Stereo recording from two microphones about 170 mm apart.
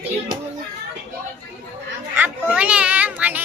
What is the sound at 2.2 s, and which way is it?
Children playing, 5° right (ahead or behind).